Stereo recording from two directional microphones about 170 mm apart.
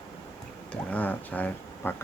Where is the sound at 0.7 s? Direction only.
10° left (ahead or behind).